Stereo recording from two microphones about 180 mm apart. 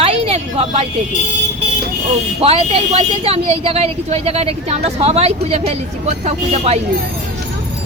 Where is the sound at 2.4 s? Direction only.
35° right (ahead or behind).